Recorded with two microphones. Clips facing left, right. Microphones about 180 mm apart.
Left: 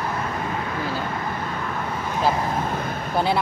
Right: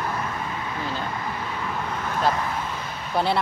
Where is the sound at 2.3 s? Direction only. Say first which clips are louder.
Left 4 dB; 45° left (ahead or behind).